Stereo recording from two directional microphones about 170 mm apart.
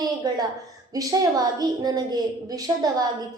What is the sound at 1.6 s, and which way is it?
Speech, 20° right (ahead or behind).